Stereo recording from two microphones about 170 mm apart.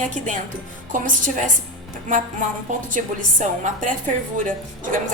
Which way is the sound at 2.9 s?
50° right (ahead or behind).